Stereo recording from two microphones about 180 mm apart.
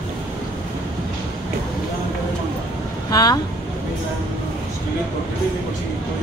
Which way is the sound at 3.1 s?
20° left (ahead or behind).